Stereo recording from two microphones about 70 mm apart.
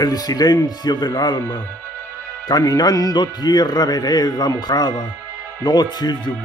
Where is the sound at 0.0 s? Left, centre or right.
Left.